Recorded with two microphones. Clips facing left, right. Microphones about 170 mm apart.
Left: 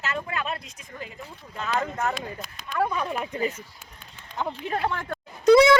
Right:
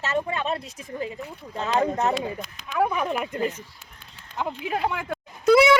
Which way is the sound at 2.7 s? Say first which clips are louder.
Right 3 dB; 10° right (ahead or behind).